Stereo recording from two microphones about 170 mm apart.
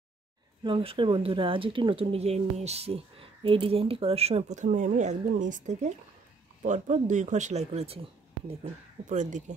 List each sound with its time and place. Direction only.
0.7 s speech: 30° right (ahead or behind)
9.1 s speech: 45° right (ahead or behind)